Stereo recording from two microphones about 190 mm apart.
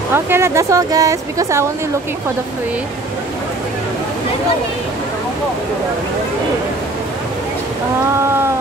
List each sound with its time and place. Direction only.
0.1 s speech: 15° right (ahead or behind)